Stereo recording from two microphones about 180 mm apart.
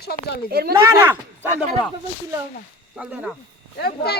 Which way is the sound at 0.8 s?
10° right (ahead or behind).